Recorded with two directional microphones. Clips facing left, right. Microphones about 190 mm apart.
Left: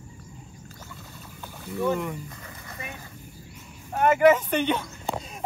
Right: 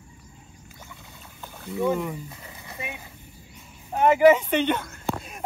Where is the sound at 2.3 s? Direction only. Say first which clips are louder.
Even; 20° right (ahead or behind).